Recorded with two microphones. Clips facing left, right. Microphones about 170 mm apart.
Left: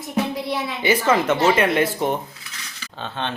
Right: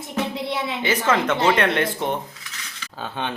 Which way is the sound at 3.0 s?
10° right (ahead or behind).